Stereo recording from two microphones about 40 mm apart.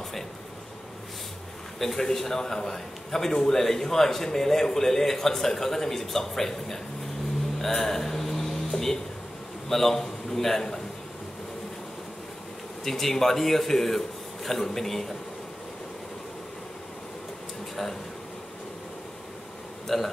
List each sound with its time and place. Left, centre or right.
1.8 s a man's voice: centre
7.5 s music: centre
9.7 s a man's voice: centre
12.8 s a man's voice: centre
19.9 s speech: centre